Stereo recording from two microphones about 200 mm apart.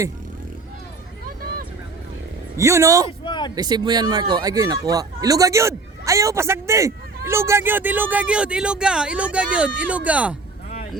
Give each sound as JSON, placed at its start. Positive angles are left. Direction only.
{"t": 2.6, "sound": "speech", "side_deg": -15}
{"t": 3.2, "sound": "speech", "side_deg": 25}
{"t": 3.5, "sound": "speech", "side_deg": -20}